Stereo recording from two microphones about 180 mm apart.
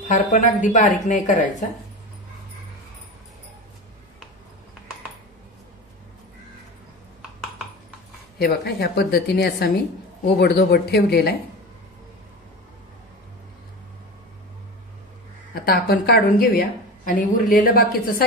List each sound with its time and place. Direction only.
0.1 s speech: 45° left (ahead or behind)
8.4 s a woman's voice: 60° left (ahead or behind)
15.5 s a woman's voice: 55° left (ahead or behind)